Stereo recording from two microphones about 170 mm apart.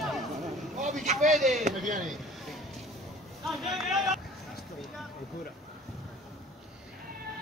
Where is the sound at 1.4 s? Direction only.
45° right (ahead or behind).